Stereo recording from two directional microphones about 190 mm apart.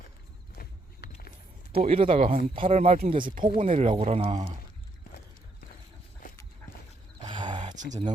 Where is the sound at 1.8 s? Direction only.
30° right (ahead or behind).